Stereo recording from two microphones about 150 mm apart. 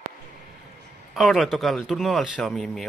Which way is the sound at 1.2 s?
Centre (ahead or behind).